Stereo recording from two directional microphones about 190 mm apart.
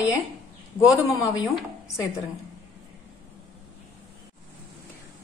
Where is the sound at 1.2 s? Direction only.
Centre (ahead or behind).